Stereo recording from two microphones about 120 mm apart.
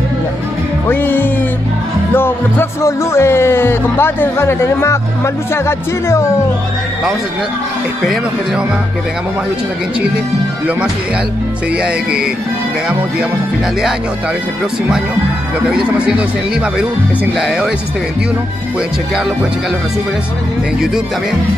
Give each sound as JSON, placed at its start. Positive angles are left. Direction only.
{"t": 0.8, "sound": "music", "side_deg": 15}
{"t": 2.1, "sound": "speech", "side_deg": 20}
{"t": 11.8, "sound": "music", "side_deg": -10}
{"t": 16.7, "sound": "speech", "side_deg": -5}